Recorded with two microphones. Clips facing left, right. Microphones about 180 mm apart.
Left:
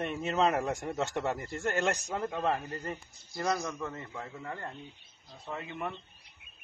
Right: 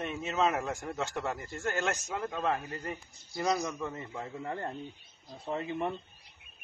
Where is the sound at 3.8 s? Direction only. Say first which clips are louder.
Right 1 dB; 15° right (ahead or behind); by 5.9 s 30° right (ahead or behind).